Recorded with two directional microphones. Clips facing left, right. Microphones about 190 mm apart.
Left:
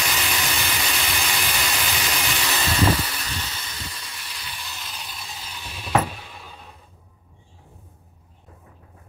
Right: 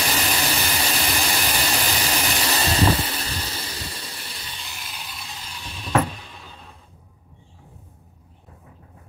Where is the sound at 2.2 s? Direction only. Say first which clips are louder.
Right 3 dB; 40° right (ahead or behind).